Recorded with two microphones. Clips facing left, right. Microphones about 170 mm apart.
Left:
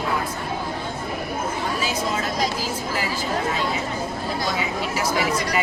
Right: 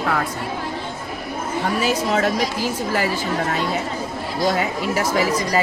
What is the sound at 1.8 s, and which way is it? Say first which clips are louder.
Speech: right 7 dB; 65° right (ahead or behind).